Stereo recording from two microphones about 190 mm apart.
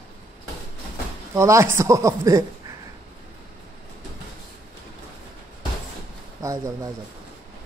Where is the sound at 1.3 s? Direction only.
15° right (ahead or behind).